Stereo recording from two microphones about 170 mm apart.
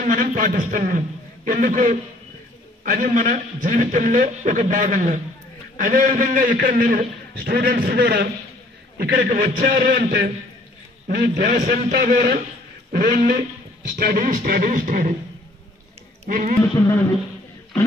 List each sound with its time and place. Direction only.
0.0 s a man's voice: 50° right (ahead or behind)
16.3 s a man's voice: 50° right (ahead or behind)